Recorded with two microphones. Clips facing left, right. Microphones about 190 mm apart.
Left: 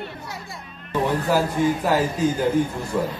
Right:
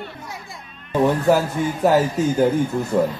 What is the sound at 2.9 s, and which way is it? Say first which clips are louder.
Speech: right 5 dB; 45° right (ahead or behind).